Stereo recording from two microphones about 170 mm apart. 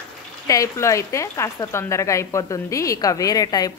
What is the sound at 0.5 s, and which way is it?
Speech, 20° left (ahead or behind).